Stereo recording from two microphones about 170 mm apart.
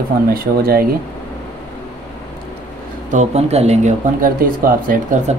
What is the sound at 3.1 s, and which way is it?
Speech, 40° right (ahead or behind).